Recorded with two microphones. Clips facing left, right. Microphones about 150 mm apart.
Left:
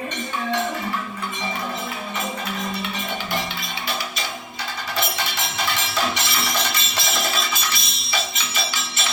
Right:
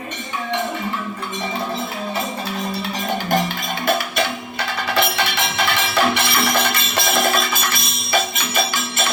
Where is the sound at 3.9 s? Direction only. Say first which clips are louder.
Right 11 dB; 60° right (ahead or behind).